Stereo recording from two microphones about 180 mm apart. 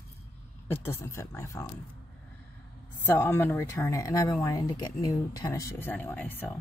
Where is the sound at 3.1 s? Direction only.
10° left (ahead or behind).